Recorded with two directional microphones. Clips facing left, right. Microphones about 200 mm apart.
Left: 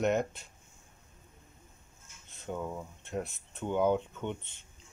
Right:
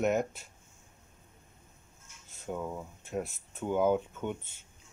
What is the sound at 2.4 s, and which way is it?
Speech, 5° right (ahead or behind).